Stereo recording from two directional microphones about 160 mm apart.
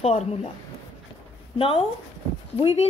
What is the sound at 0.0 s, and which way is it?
Speech, 40° left (ahead or behind).